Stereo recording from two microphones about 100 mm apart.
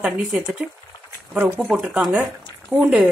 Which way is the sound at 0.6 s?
15° right (ahead or behind).